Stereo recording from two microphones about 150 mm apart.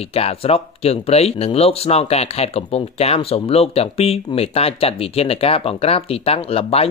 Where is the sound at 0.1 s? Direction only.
40° left (ahead or behind).